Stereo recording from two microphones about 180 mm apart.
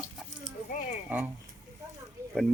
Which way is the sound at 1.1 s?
10° right (ahead or behind).